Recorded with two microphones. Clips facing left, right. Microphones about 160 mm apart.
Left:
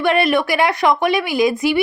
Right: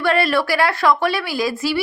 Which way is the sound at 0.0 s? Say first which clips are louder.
Left 2 dB; 20° left (ahead or behind).